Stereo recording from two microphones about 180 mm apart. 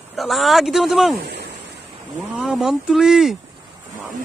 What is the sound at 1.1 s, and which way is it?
Speech, 60° right (ahead or behind).